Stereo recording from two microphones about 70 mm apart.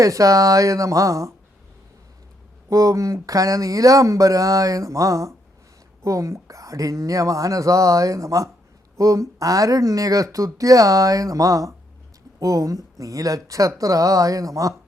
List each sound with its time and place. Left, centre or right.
0.0 s speech: right
2.6 s speech: right